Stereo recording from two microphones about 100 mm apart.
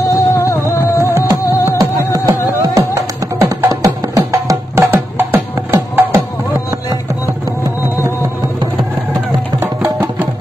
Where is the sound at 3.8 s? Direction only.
35° right (ahead or behind).